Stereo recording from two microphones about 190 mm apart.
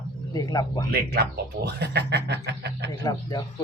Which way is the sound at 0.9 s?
55° right (ahead or behind).